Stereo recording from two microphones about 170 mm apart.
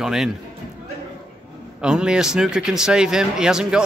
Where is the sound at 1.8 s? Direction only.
5° right (ahead or behind).